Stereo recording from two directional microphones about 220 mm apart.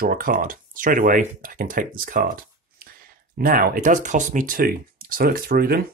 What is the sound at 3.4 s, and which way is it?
Speech, 40° right (ahead or behind).